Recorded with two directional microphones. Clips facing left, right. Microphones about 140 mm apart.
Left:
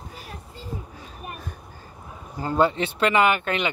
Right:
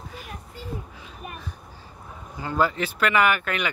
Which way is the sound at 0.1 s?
30° left (ahead or behind).